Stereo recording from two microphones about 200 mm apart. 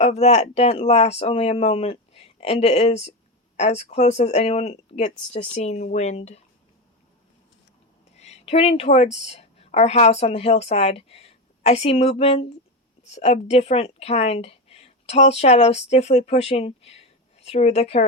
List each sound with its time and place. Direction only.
0.0 s speech: 30° left (ahead or behind)
8.1 s a woman's voice: 35° left (ahead or behind)